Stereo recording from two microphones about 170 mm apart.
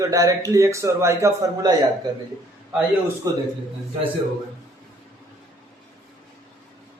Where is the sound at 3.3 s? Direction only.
20° right (ahead or behind).